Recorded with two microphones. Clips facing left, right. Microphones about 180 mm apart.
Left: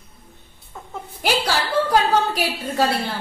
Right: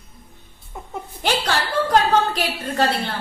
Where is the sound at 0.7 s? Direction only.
15° right (ahead or behind).